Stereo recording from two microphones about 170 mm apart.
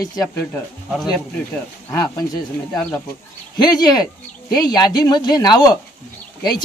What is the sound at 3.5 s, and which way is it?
Speech, 25° left (ahead or behind).